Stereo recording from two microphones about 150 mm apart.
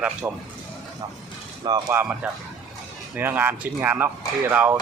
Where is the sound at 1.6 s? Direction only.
25° right (ahead or behind).